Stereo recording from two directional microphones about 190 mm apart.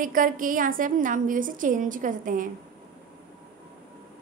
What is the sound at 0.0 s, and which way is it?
A woman's voice, 45° right (ahead or behind).